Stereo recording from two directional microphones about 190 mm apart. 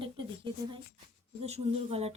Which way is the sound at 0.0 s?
25° right (ahead or behind).